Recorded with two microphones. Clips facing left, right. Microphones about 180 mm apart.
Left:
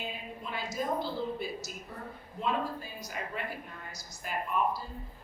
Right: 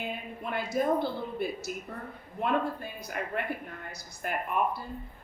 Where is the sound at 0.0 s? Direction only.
55° right (ahead or behind).